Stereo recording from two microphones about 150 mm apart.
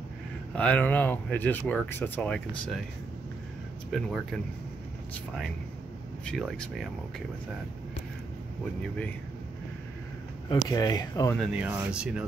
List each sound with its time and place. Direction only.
0.5 s speech: 10° left (ahead or behind)
3.9 s speech: centre (ahead or behind)
6.2 s speech: 5° left (ahead or behind)
10.5 s speech: 25° left (ahead or behind)
11.3 s speech: centre (ahead or behind)